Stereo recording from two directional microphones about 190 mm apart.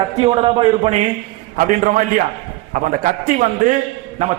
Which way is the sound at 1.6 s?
45° right (ahead or behind).